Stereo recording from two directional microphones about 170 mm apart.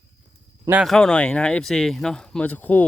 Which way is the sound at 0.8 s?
5° left (ahead or behind).